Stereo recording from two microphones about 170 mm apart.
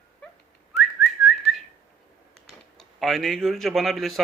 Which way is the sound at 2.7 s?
Centre (ahead or behind).